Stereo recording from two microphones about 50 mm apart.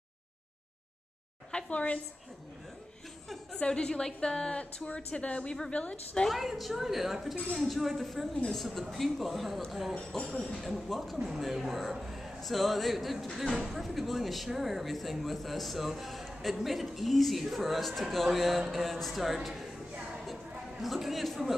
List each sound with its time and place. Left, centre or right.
1.7 s a woman's voice: left
3.5 s a woman's voice: centre
6.2 s speech: centre
11.1 s speech: centre
20.8 s speech: centre